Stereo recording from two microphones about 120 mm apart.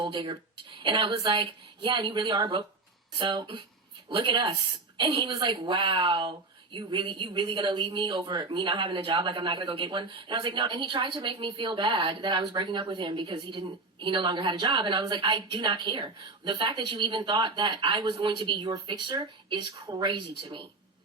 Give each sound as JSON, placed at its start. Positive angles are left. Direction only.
{"t": 0.0, "sound": "a woman's voice", "side_deg": -40}